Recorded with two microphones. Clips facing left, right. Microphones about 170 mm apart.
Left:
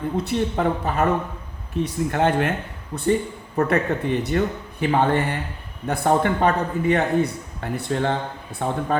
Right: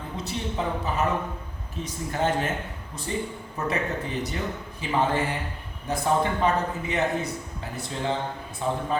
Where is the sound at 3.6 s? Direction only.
60° left (ahead or behind).